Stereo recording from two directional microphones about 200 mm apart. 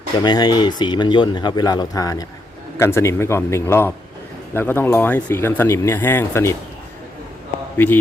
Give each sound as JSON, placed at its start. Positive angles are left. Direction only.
{"t": 0.2, "sound": "speech", "side_deg": 20}
{"t": 7.8, "sound": "speech", "side_deg": 10}